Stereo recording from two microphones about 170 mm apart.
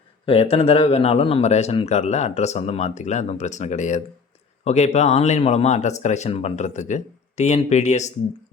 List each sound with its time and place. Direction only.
0.3 s speech: 35° left (ahead or behind)